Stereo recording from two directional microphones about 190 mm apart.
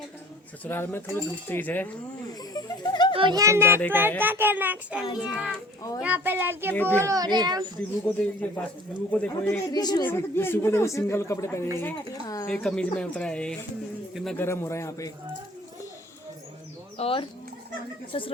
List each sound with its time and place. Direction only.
0.6 s speech: 10° left (ahead or behind)
2.4 s speech: 20° left (ahead or behind)
3.2 s a child's voice: 20° right (ahead or behind)
8.0 s speech: 10° left (ahead or behind)
9.6 s a woman's voice: 20° left (ahead or behind)
12.5 s a man's voice: 5° left (ahead or behind)
14.3 s speech: 10° left (ahead or behind)
17.0 s a woman's voice: 30° left (ahead or behind)